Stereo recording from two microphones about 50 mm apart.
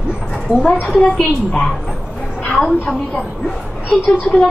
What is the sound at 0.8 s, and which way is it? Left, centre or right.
A woman's voice, centre.